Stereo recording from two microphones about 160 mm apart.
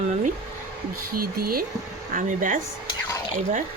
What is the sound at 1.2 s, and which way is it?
Speech, 65° right (ahead or behind).